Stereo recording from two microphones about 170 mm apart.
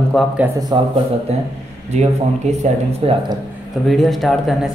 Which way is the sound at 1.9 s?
40° right (ahead or behind).